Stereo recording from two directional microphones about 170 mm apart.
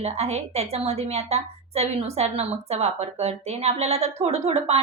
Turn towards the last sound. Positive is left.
turn(degrees=-35)  # may be behind; listen again after turning